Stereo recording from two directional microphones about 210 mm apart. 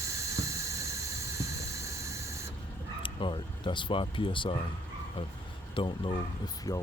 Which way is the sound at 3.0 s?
25° left (ahead or behind).